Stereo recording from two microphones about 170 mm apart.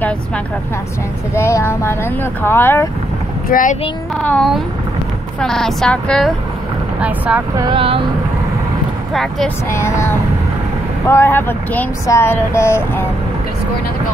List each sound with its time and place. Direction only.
1.3 s speech: 15° left (ahead or behind)
3.4 s speech: 55° left (ahead or behind)
4.2 s speech: 5° left (ahead or behind)
7.0 s speech: 10° right (ahead or behind)
7.6 s speech: 30° right (ahead or behind)
9.1 s speech: centre (ahead or behind)
9.7 s speech: 15° left (ahead or behind)